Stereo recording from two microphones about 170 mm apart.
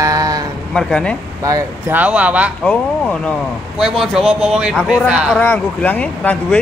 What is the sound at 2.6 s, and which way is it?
Speech, 5° left (ahead or behind).